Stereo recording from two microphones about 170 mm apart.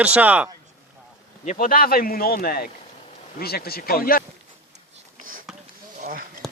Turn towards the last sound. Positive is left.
turn(degrees=0)  # may be behind; listen again after turning